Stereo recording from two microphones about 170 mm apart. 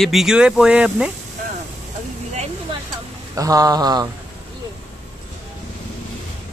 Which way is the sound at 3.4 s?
20° right (ahead or behind).